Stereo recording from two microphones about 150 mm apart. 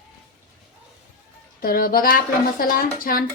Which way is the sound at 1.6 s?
75° left (ahead or behind).